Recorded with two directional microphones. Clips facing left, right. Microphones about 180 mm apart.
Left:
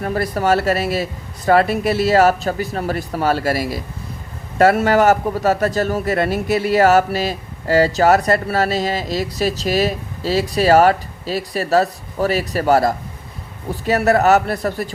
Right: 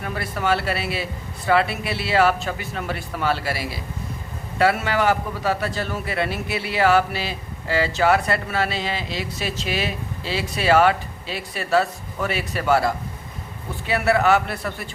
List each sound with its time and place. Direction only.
0.0 s a man's voice: 40° left (ahead or behind)